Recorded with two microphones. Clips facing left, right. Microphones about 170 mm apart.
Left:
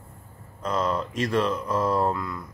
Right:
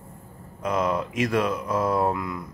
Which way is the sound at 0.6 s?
10° right (ahead or behind).